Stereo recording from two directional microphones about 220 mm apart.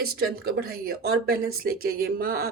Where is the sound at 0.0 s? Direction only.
45° right (ahead or behind).